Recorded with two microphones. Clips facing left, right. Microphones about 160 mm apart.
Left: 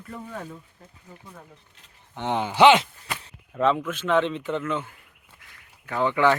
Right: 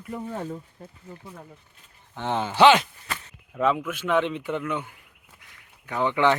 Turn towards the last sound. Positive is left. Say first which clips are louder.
# left 1 dB
turn(degrees=-20)  # may be behind; listen again after turning